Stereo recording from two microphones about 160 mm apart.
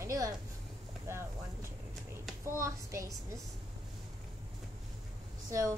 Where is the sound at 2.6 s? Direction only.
20° right (ahead or behind).